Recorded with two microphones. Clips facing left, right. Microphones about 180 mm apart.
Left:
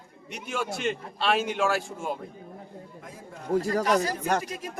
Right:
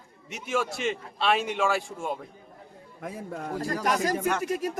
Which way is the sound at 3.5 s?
45° left (ahead or behind).